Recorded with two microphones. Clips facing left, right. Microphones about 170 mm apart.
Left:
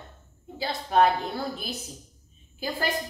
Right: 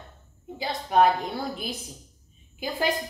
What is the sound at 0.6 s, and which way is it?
Speech, 15° right (ahead or behind).